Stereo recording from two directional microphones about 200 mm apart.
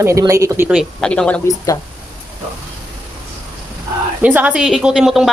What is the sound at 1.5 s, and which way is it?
Speech, 15° left (ahead or behind).